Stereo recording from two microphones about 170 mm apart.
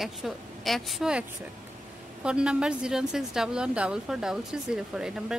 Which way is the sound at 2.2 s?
5° right (ahead or behind).